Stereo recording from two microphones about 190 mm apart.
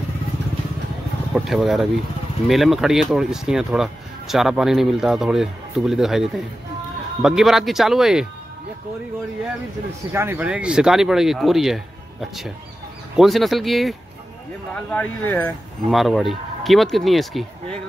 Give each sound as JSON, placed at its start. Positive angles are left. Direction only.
{"t": 1.3, "sound": "speech", "side_deg": 0}
{"t": 10.1, "sound": "speech", "side_deg": -10}